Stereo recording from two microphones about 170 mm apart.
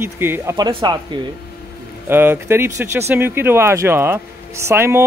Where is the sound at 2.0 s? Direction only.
10° right (ahead or behind).